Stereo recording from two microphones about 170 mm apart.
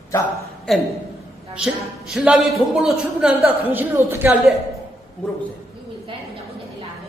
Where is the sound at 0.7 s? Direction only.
Centre (ahead or behind).